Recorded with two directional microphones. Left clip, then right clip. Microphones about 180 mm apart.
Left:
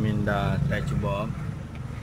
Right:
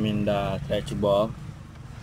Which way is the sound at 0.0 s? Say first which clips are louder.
Right 2 dB; 10° right (ahead or behind).